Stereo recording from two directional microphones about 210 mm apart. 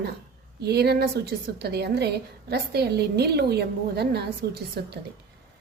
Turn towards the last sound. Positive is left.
turn(degrees=-50)  # may be behind; listen again after turning